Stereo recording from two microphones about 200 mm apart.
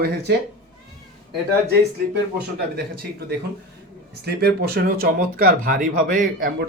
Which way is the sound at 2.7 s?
50° right (ahead or behind).